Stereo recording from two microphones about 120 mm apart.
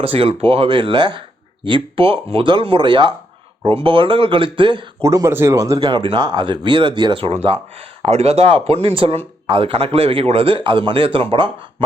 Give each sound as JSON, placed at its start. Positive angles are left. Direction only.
{"t": 0.0, "sound": "speech", "side_deg": -50}
{"t": 5.0, "sound": "speech", "side_deg": -25}
{"t": 5.8, "sound": "speech", "side_deg": -45}